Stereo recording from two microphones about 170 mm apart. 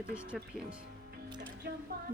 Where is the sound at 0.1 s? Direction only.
5° right (ahead or behind).